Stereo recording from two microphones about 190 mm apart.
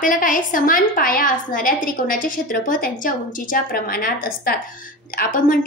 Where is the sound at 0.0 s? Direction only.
45° left (ahead or behind).